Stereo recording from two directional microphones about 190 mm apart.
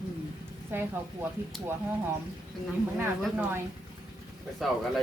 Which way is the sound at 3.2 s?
5° right (ahead or behind).